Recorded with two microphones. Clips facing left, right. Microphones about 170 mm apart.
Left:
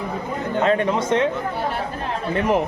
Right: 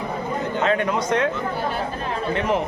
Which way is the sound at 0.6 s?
35° left (ahead or behind).